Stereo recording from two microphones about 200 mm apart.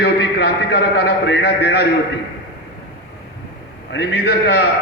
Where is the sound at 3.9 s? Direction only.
55° left (ahead or behind).